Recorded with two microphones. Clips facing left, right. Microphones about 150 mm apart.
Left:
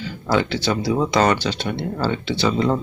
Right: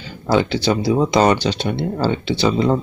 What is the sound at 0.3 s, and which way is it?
Speech, 20° right (ahead or behind).